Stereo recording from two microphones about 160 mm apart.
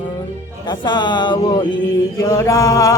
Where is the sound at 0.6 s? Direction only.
30° left (ahead or behind).